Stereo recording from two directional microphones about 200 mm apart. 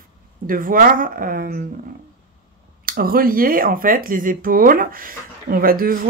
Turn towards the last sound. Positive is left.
turn(degrees=-45)  # may be behind; listen again after turning